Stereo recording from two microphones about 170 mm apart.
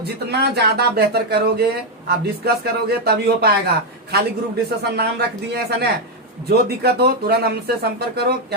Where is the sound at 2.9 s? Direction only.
70° right (ahead or behind).